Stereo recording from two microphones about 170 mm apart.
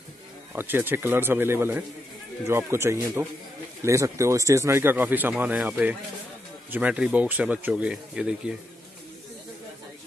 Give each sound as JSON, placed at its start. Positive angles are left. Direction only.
{"t": 0.6, "sound": "speech", "side_deg": -10}